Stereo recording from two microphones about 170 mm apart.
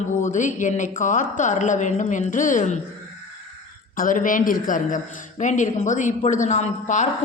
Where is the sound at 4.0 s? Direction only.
50° left (ahead or behind).